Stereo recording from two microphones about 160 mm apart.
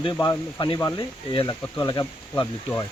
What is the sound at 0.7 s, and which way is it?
Speech, 20° left (ahead or behind).